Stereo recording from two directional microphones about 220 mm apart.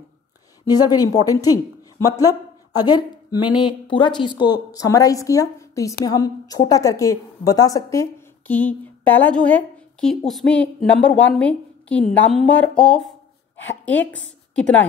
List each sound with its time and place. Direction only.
0.7 s a woman's voice: 15° left (ahead or behind)